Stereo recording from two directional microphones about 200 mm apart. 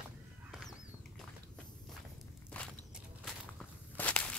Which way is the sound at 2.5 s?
5° left (ahead or behind).